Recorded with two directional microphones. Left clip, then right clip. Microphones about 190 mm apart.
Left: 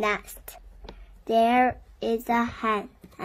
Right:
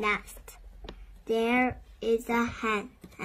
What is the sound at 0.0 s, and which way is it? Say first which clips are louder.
Speech: left 3 dB; 40° left (ahead or behind).